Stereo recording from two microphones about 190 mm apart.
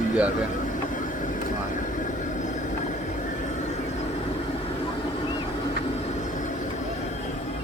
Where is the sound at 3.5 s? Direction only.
35° left (ahead or behind).